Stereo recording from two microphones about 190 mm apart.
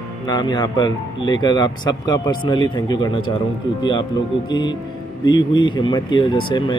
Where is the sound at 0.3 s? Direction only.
20° left (ahead or behind).